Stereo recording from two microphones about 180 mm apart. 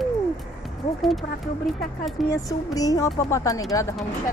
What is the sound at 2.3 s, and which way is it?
Speech, 20° left (ahead or behind).